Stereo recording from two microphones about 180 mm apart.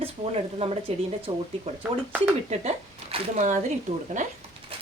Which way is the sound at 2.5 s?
40° right (ahead or behind).